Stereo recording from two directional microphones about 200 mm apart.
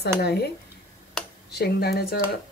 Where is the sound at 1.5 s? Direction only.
55° left (ahead or behind).